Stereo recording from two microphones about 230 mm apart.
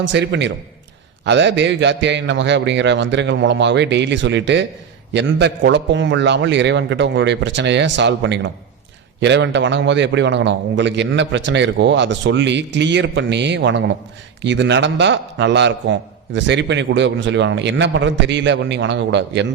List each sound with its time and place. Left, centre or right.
0.0 s a man's voice: right